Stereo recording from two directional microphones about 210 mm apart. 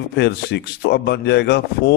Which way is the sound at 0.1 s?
50° left (ahead or behind).